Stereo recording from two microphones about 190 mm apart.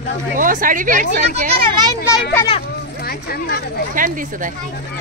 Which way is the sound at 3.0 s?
55° left (ahead or behind).